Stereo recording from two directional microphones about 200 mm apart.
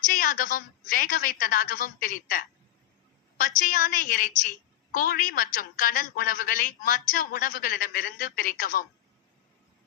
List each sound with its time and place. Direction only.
0.0 s a woman's voice: 45° left (ahead or behind)